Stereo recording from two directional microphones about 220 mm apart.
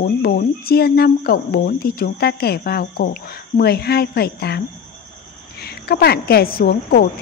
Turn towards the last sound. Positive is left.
turn(degrees=45)  # may be behind; listen again after turning